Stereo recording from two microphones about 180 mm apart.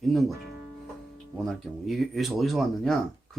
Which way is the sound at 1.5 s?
Centre (ahead or behind).